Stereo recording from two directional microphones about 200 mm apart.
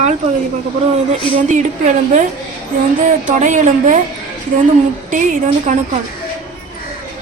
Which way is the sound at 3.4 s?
35° right (ahead or behind).